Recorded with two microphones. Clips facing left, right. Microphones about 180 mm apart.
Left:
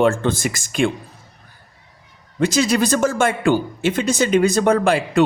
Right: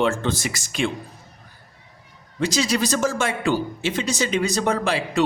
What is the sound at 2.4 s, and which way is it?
Speech, 55° left (ahead or behind).